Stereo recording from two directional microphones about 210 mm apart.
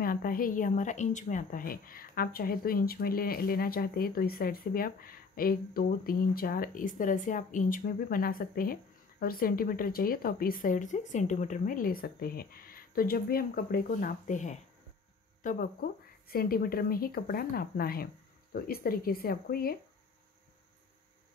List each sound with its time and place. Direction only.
0.0 s a woman's voice: 45° left (ahead or behind)